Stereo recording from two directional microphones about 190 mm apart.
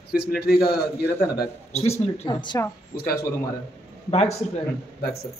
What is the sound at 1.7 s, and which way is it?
Speech, 35° left (ahead or behind).